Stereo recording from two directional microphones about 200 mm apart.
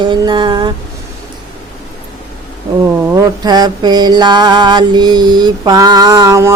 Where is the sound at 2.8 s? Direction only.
15° right (ahead or behind).